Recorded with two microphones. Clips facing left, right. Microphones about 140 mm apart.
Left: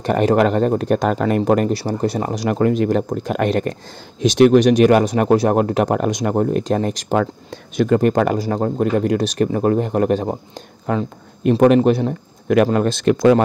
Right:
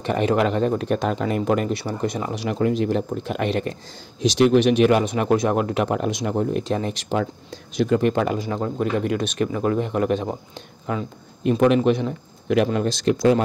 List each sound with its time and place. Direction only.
0.0 s speech: 40° left (ahead or behind)
1.4 s speech: 45° left (ahead or behind)
7.2 s speech: 55° left (ahead or behind)